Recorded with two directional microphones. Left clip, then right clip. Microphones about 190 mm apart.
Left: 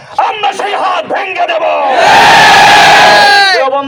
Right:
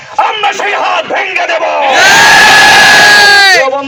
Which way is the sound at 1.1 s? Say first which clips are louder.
Right 1 dB; 25° left (ahead or behind).